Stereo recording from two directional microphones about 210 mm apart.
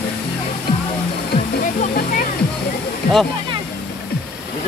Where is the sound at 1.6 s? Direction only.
40° left (ahead or behind).